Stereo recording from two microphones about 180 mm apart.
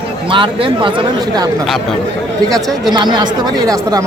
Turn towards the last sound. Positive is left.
turn(degrees=-25)  # may be behind; listen again after turning